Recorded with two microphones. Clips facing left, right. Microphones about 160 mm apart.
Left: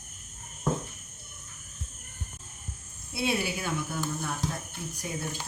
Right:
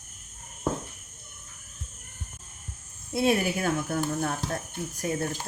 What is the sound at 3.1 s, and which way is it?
Speech, 50° right (ahead or behind).